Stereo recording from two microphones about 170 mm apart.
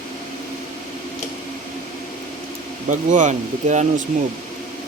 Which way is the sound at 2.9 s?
45° right (ahead or behind).